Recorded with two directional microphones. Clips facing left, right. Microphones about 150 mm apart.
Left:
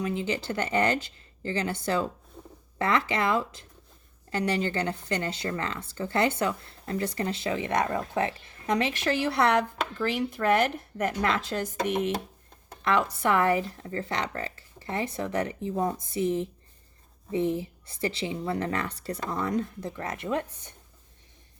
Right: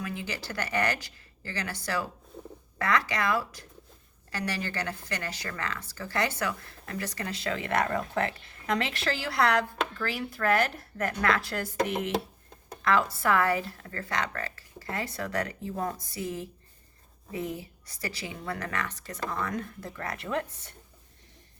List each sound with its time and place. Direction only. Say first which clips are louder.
0.0 s speech: left 7 dB; 25° left (ahead or behind)